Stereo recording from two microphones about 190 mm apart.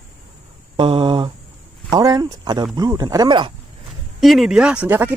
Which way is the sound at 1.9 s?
20° right (ahead or behind).